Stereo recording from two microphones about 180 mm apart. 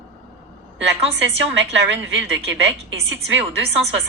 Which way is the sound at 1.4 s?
85° right.